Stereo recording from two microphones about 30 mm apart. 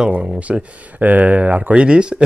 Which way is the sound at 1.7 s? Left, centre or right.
Right.